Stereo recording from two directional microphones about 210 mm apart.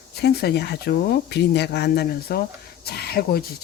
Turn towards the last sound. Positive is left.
turn(degrees=45)  # may be behind; listen again after turning